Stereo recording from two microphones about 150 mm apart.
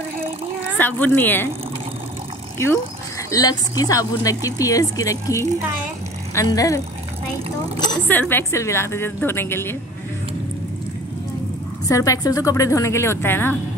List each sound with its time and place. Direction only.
0.7 s a woman's voice: 10° left (ahead or behind)
3.3 s speech: 25° left (ahead or behind)
8.1 s a woman's voice: 15° left (ahead or behind)
11.9 s speech: 20° left (ahead or behind)